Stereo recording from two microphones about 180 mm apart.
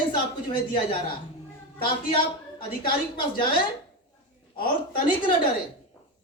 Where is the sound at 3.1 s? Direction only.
25° left (ahead or behind).